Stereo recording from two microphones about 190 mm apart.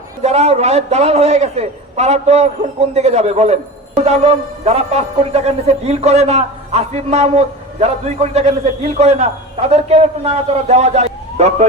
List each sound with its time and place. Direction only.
0.2 s a man's voice: 35° right (ahead or behind)